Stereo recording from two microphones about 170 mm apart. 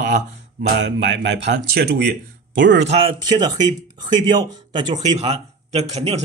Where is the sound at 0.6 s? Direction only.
90° right.